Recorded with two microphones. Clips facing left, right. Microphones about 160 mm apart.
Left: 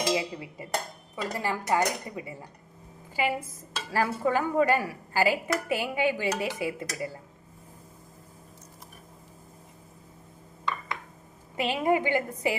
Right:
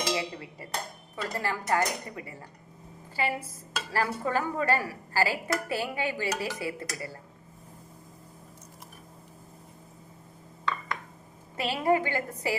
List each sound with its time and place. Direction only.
0.1 s a woman's voice: 15° left (ahead or behind)
11.5 s a woman's voice: 15° left (ahead or behind)